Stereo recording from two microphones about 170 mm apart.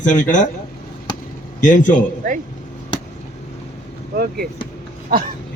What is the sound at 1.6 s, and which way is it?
Speech, 50° left (ahead or behind).